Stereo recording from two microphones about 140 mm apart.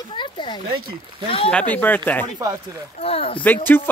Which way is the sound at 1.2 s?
40° left (ahead or behind).